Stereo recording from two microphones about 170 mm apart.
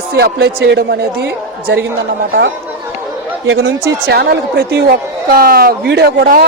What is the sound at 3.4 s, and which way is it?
Speech, 80° right.